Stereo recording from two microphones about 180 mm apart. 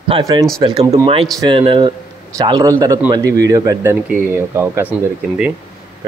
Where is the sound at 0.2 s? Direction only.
20° right (ahead or behind).